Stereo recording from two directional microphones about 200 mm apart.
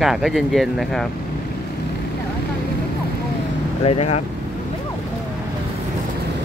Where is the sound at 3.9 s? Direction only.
30° left (ahead or behind).